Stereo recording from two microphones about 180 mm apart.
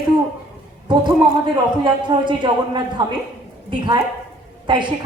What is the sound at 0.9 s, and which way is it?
A woman's voice, 25° right (ahead or behind).